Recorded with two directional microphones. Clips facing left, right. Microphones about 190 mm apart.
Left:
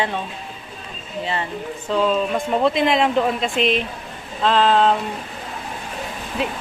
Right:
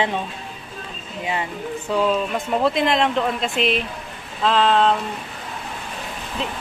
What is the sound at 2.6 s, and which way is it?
Speech, centre (ahead or behind).